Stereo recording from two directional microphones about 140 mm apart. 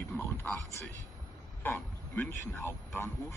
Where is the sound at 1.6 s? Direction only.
15° left (ahead or behind).